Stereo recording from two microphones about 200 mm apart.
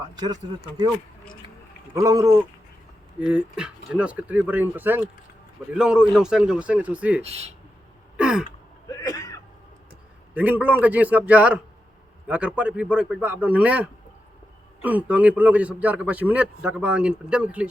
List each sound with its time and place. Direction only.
2.0 s a man's voice: 15° right (ahead or behind)
7.2 s speech: 30° right (ahead or behind)
8.1 s gasp: 5° right (ahead or behind)
8.9 s a sound: 15° left (ahead or behind)
10.3 s a man's voice: 5° right (ahead or behind)